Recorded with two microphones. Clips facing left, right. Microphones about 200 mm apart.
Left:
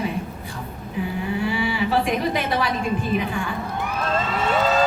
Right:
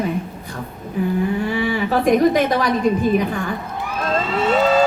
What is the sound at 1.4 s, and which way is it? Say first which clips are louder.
A woman's voice: right 3 dB; 45° right (ahead or behind).